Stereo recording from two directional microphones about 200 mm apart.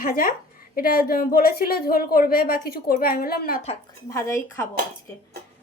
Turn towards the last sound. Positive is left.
turn(degrees=15)  # may be behind; listen again after turning